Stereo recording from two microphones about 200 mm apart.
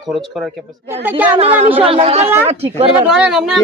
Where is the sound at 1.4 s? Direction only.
30° right (ahead or behind).